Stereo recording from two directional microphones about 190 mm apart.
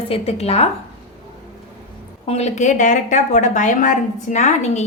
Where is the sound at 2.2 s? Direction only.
35° left (ahead or behind).